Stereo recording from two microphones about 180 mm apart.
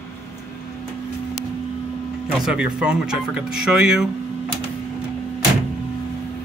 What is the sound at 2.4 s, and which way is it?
Speech, 5° right (ahead or behind).